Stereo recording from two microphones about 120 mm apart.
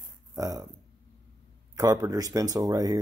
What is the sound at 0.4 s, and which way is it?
Speech, 30° right (ahead or behind).